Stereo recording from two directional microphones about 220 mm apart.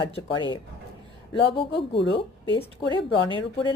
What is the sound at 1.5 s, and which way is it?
A woman's voice, 25° left (ahead or behind).